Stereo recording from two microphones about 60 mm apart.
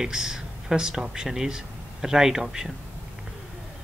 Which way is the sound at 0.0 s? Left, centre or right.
Centre.